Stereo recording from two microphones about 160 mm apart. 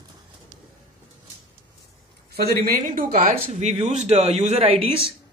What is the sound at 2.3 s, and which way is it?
Speech, 70° right (ahead or behind).